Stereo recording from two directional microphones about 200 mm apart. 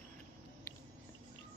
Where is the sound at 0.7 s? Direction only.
15° left (ahead or behind).